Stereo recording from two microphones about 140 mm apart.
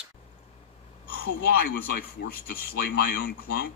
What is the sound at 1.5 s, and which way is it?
Speech, 90° left.